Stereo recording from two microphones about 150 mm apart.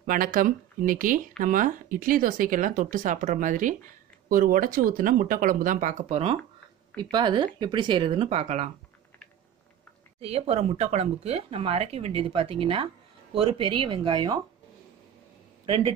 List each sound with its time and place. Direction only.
0.0 s speech: 70° right (ahead or behind); by 6.3 s 45° right (ahead or behind)
7.0 s speech: 30° right (ahead or behind); by 8.7 s 50° right (ahead or behind)
10.2 s speech: 40° right (ahead or behind)
15.6 s a man's voice: 35° right (ahead or behind)